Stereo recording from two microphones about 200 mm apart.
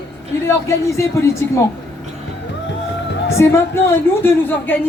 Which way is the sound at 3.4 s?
15° left (ahead or behind).